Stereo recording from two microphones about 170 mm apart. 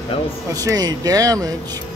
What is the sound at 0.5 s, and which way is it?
Speech, 20° right (ahead or behind).